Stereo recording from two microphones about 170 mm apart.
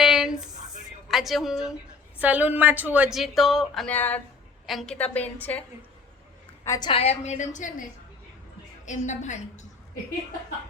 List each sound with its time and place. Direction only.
0.0 s a sound: centre (ahead or behind)
1.0 s a woman's voice: centre (ahead or behind)
6.7 s a woman's voice: 25° left (ahead or behind); by 7.9 s 50° left (ahead or behind)
8.9 s a woman's voice: 45° left (ahead or behind)